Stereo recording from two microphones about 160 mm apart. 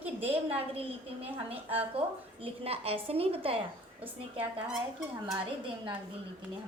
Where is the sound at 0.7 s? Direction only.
35° right (ahead or behind).